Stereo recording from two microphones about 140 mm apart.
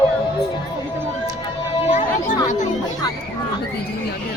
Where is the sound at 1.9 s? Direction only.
65° left (ahead or behind).